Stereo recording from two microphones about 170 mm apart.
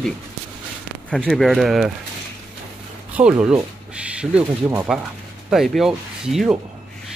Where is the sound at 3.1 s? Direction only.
5° right (ahead or behind).